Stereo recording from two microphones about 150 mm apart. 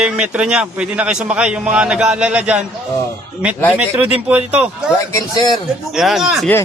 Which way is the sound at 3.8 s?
10° right (ahead or behind).